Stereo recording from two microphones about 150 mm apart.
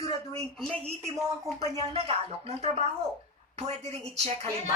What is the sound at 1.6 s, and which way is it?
Speech, 45° right (ahead or behind).